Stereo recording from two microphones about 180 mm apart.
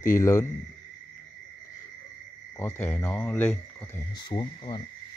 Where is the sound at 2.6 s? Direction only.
15° left (ahead or behind).